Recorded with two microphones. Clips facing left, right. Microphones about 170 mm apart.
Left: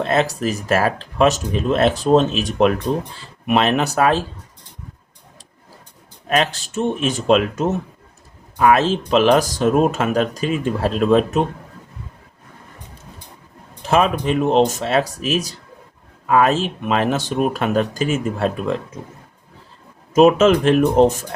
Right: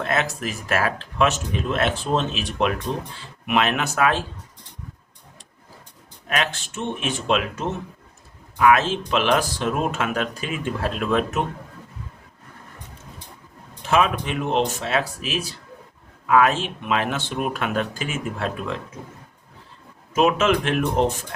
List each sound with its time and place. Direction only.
0.0 s speech: 30° left (ahead or behind)
6.2 s speech: 35° left (ahead or behind)
13.8 s speech: 35° left (ahead or behind)
20.1 s speech: 40° left (ahead or behind)